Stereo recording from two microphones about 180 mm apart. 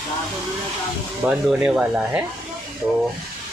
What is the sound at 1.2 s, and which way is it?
Speech, 5° right (ahead or behind).